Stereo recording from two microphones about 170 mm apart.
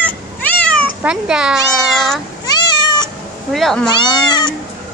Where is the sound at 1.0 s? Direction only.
5° right (ahead or behind).